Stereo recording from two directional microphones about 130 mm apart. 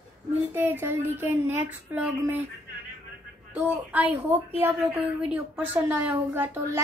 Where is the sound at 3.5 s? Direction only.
15° right (ahead or behind).